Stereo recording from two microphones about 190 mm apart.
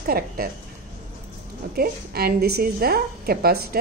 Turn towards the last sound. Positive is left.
turn(degrees=-50)  # may be behind; listen again after turning